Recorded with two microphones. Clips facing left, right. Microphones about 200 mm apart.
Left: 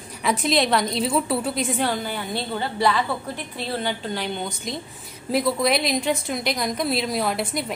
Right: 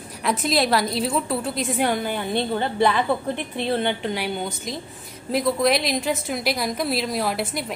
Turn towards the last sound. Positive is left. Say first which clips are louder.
# even
turn(degrees=0)  # may be behind; listen again after turning